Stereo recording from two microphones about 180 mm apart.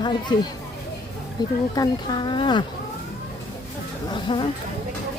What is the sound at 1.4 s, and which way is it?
Speech, 25° left (ahead or behind).